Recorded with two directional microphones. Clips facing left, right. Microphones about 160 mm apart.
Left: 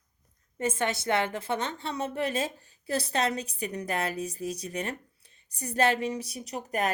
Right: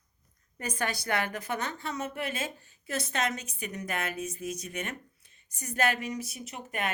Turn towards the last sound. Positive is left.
turn(degrees=40)  # may be behind; listen again after turning